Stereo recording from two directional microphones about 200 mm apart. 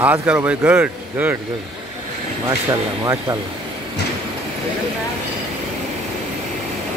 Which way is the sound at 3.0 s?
15° right (ahead or behind).